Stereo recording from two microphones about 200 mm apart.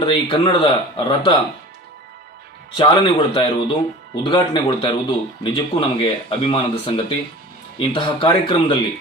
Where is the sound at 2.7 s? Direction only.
25° left (ahead or behind).